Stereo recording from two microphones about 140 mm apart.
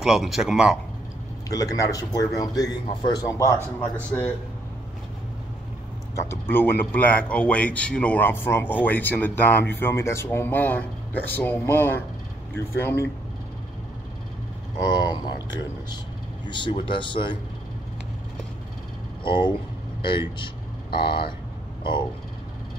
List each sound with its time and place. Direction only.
0.0 s speech: 5° right (ahead or behind)
1.5 s speech: 25° left (ahead or behind)
6.1 s speech: 15° left (ahead or behind)
14.9 s speech: 30° left (ahead or behind)
16.4 s speech: 35° left (ahead or behind)
19.2 s speech: 35° left (ahead or behind)